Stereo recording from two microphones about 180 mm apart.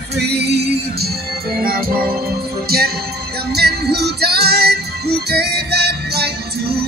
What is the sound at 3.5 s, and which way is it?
Music, 65° right (ahead or behind).